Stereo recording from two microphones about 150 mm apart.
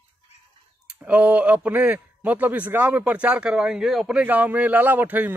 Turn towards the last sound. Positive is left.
turn(degrees=-10)  # may be behind; listen again after turning